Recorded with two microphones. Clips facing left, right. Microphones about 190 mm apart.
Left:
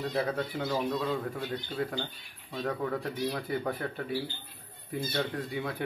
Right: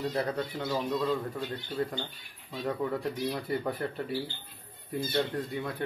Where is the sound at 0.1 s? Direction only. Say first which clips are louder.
Left 1 dB; 5° left (ahead or behind).